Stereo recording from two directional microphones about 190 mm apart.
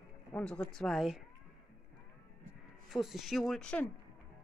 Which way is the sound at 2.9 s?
Centre (ahead or behind).